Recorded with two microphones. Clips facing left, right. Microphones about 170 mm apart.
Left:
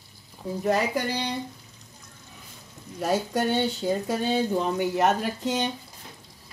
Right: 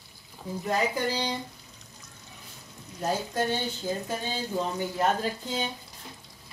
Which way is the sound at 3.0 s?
75° left (ahead or behind).